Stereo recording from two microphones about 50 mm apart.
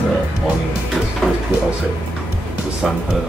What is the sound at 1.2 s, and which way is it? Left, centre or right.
Speech, centre.